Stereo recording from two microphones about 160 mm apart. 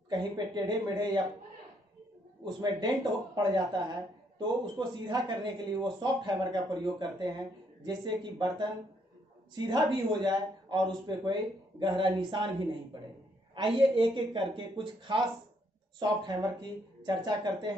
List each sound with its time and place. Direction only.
0.1 s speech: 25° right (ahead or behind)
2.4 s speech: 25° right (ahead or behind)
13.6 s speech: 30° right (ahead or behind)